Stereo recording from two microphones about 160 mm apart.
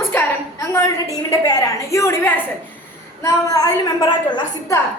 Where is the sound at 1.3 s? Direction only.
20° left (ahead or behind).